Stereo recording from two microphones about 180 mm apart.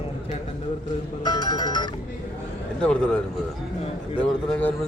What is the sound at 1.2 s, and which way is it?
Music, 25° left (ahead or behind).